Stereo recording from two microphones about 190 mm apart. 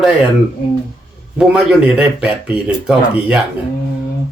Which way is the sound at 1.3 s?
5° right (ahead or behind).